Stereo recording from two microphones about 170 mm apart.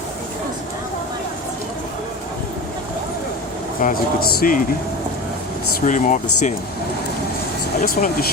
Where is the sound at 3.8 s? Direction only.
60° left (ahead or behind).